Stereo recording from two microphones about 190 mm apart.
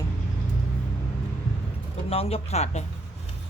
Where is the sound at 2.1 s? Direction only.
30° left (ahead or behind).